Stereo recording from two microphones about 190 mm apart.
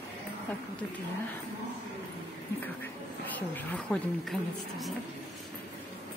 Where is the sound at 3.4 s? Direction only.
10° left (ahead or behind).